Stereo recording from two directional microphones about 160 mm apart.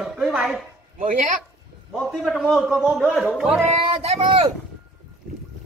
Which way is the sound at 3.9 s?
35° right (ahead or behind).